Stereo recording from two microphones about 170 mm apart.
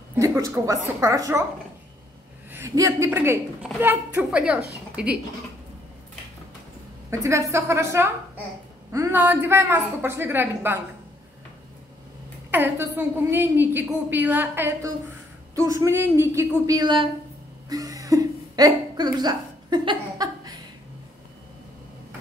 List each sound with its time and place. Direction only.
0.1 s a woman's voice: 15° right (ahead or behind)
2.5 s a woman's voice: 15° right (ahead or behind)
7.1 s a woman's voice: 15° right (ahead or behind)
12.4 s a woman's voice: 10° right (ahead or behind); by 17.1 s 30° right (ahead or behind)
17.6 s a sound: 20° right (ahead or behind)